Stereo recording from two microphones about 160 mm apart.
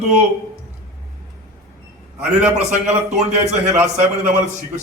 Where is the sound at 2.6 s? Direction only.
45° right (ahead or behind).